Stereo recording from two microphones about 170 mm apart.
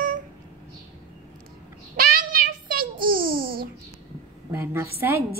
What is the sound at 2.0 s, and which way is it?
Child singing, 60° right (ahead or behind).